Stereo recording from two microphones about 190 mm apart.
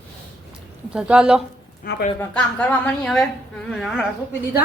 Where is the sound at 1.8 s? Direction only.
55° left (ahead or behind).